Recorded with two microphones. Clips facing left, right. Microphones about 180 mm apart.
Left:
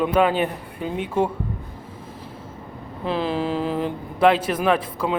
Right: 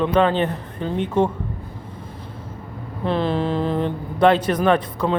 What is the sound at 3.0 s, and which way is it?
Speech, 5° left (ahead or behind).